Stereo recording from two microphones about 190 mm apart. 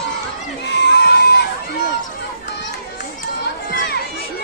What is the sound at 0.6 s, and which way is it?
Crowd, 65° left (ahead or behind).